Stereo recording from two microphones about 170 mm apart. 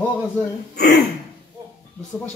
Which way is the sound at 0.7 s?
70° left (ahead or behind).